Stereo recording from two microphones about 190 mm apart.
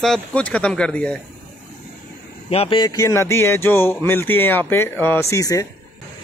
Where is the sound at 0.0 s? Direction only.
5° left (ahead or behind).